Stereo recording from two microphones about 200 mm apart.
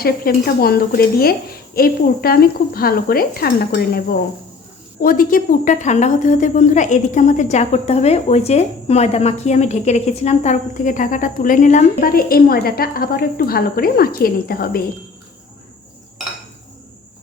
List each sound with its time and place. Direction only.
0.0 s a woman's voice: 50° left (ahead or behind)